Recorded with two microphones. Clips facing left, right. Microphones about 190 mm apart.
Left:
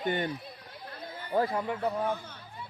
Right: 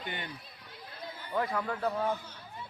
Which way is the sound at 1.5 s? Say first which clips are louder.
Left 2 dB; 15° left (ahead or behind).